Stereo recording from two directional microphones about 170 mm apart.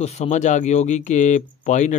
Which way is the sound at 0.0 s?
40° left (ahead or behind).